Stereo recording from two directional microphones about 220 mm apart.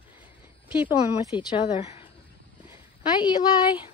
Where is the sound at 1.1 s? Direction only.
20° left (ahead or behind).